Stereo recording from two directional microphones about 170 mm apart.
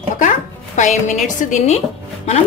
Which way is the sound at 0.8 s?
45° left (ahead or behind).